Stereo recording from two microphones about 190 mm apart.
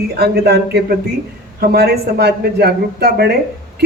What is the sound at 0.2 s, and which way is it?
Speech, 60° right (ahead or behind).